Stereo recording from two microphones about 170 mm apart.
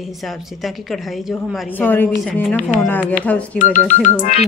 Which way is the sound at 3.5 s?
50° left (ahead or behind).